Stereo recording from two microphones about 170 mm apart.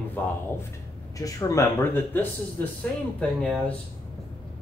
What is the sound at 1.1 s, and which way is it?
Speech, 20° left (ahead or behind).